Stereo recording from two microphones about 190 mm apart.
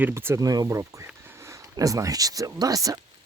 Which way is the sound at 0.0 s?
10° right (ahead or behind).